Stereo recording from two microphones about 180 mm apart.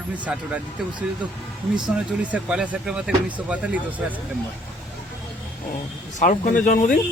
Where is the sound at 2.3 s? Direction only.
5° right (ahead or behind).